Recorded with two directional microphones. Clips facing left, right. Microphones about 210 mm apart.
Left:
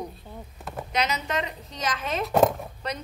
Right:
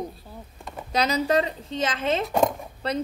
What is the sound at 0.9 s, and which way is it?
A woman's voice, 35° right (ahead or behind).